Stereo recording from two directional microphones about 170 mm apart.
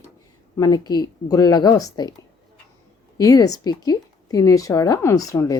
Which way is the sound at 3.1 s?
20° left (ahead or behind).